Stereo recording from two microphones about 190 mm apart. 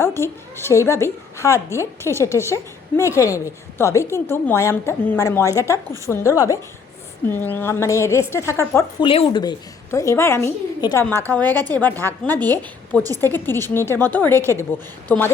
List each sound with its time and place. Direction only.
0.0 s a woman's voice: 15° left (ahead or behind)
6.1 s speech: 5° left (ahead or behind)
7.3 s a woman's voice: 10° left (ahead or behind)
9.0 s a woman's voice: 30° left (ahead or behind); by 14.3 s 10° left (ahead or behind)
14.3 s a woman's voice: 15° right (ahead or behind)